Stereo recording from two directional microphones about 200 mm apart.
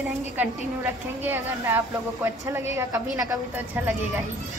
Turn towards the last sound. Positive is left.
turn(degrees=-15)  # may be behind; listen again after turning